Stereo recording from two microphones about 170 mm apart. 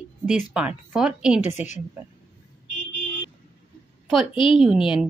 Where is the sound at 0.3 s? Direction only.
5° right (ahead or behind).